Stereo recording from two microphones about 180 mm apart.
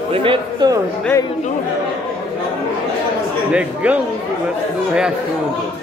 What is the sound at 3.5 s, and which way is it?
Speech, 5° right (ahead or behind).